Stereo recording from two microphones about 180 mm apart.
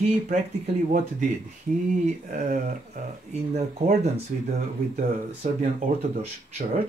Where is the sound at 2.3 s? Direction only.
45° right (ahead or behind).